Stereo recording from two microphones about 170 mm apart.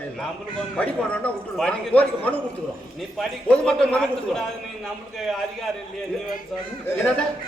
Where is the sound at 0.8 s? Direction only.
5° left (ahead or behind).